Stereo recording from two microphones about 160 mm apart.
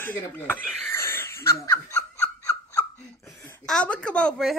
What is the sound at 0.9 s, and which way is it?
Laughter, 15° left (ahead or behind).